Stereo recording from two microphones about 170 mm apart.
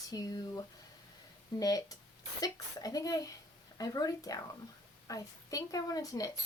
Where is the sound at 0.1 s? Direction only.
20° left (ahead or behind).